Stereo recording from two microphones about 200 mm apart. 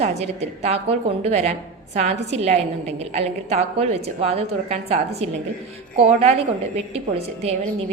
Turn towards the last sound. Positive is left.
turn(degrees=-30)  # may be behind; listen again after turning